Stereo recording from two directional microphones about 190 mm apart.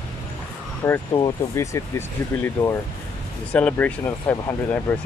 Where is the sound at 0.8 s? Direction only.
15° left (ahead or behind).